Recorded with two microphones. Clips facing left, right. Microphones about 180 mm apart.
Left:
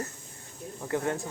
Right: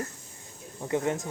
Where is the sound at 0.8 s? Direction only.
20° right (ahead or behind).